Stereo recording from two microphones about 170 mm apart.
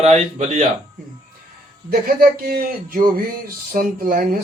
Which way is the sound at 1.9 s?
65° right (ahead or behind).